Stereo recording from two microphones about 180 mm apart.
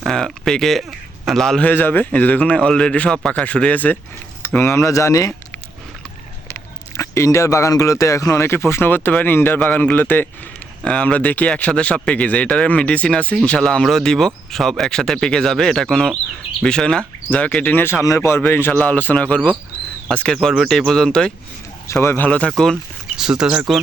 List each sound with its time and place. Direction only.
0.0 s speech: centre (ahead or behind); by 5.3 s 20° left (ahead or behind)
6.5 s speech: 15° left (ahead or behind); by 23.8 s 5° right (ahead or behind)